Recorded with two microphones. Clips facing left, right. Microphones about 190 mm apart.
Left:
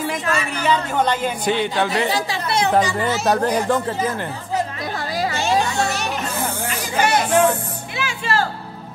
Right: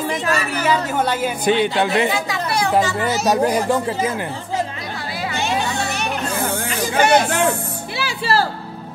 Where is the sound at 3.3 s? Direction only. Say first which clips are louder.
Right 1 dB; 10° right (ahead or behind).